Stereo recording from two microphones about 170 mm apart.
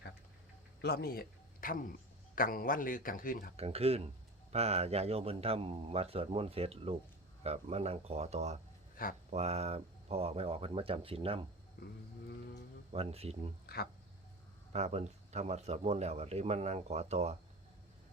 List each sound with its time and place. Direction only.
0.8 s speech: 70° left (ahead or behind)
1.6 s speech: 55° left (ahead or behind)
3.6 s speech: 35° right (ahead or behind)
9.0 s speech: 55° left (ahead or behind)
9.3 s speech: 40° right (ahead or behind)
11.8 s speech: 70° left (ahead or behind)
12.9 s speech: 35° right (ahead or behind)
14.7 s speech: 40° right (ahead or behind)